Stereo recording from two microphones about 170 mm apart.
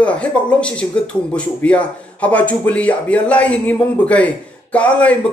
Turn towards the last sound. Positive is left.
turn(degrees=10)  # may be behind; listen again after turning